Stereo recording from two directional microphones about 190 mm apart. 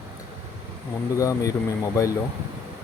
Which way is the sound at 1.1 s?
15° left (ahead or behind).